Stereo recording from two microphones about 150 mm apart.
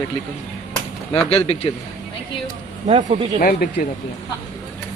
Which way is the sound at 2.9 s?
45° right (ahead or behind).